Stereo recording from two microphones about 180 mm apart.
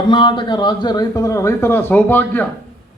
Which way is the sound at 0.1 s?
25° left (ahead or behind).